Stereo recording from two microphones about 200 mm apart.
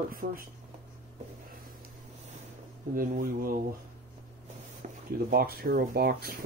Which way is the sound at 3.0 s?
45° right (ahead or behind).